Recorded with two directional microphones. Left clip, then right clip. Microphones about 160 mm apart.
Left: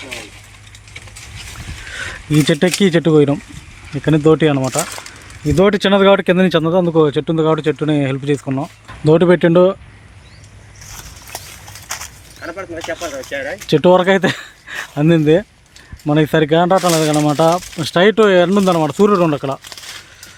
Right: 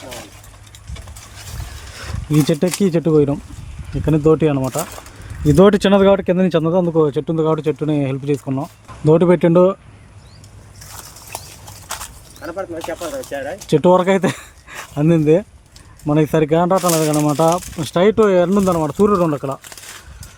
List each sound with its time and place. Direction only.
2.3 s speech: centre (ahead or behind)
2.8 s speech: 10° left (ahead or behind)
5.5 s speech: 35° right (ahead or behind)
6.1 s speech: centre (ahead or behind)
6.9 s speech: 5° left (ahead or behind)
11.9 s a sound: 10° right (ahead or behind)
12.4 s a sound: 60° right (ahead or behind)
12.9 s speech: 65° right (ahead or behind)
13.7 s speech: centre (ahead or behind)